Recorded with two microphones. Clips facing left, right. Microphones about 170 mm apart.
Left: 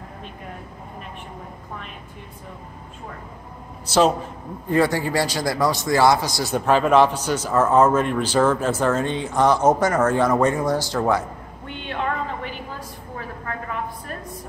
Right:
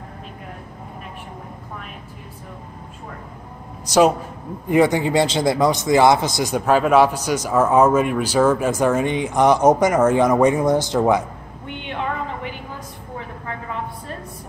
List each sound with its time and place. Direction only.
3.8 s a man's voice: 15° right (ahead or behind)
6.6 s a man's voice: 5° right (ahead or behind)